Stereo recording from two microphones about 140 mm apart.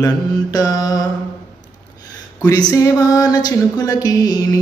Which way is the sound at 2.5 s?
25° left (ahead or behind).